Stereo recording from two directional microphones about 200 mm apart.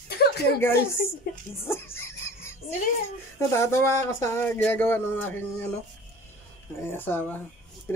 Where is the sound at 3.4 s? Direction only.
15° left (ahead or behind).